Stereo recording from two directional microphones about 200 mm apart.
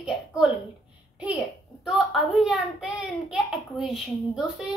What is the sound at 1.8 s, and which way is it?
A child's voice, centre (ahead or behind).